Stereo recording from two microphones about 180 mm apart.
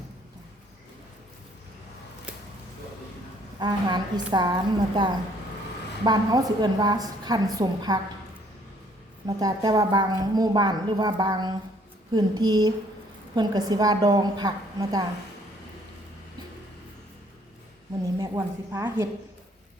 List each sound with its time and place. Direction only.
3.6 s a woman's voice: 25° right (ahead or behind)
9.2 s a woman's voice: 20° right (ahead or behind)
18.2 s a woman's voice: 15° right (ahead or behind)